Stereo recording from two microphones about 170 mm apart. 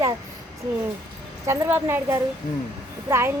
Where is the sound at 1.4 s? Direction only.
15° right (ahead or behind).